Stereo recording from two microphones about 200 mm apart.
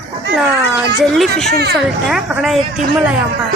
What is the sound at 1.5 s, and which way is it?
Speech, 55° right (ahead or behind).